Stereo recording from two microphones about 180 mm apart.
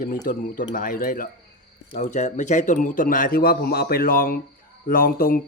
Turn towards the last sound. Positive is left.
turn(degrees=55)  # may be behind; listen again after turning